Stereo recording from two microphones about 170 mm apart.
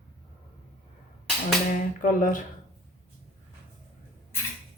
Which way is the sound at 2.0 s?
50° left (ahead or behind).